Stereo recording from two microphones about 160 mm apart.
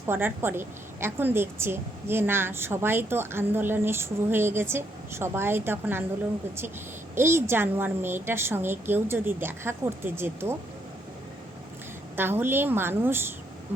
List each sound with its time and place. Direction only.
0.0 s a woman's voice: 15° right (ahead or behind)
7.2 s a woman's voice: 15° right (ahead or behind)
12.1 s a woman's voice: 15° right (ahead or behind)